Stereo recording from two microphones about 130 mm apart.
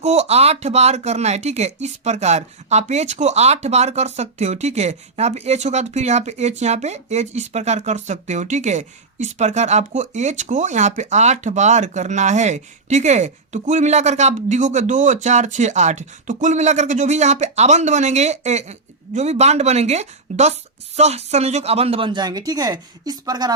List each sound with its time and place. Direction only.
0.0 s speech: 55° right (ahead or behind); by 23.6 s 30° right (ahead or behind)